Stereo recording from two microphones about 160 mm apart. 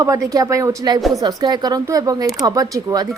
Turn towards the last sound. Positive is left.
turn(degrees=-20)  # may be behind; listen again after turning